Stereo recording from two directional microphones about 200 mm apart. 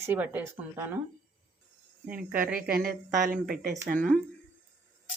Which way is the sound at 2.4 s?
45° right (ahead or behind).